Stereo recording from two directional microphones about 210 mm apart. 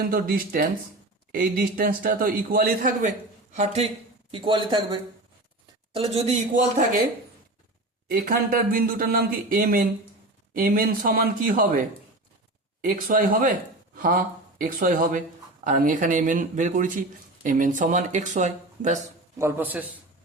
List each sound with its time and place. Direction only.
0.0 s a man's voice: 45° right (ahead or behind)
8.0 s a man's voice: 40° right (ahead or behind)
19.4 s a man's voice: 10° right (ahead or behind)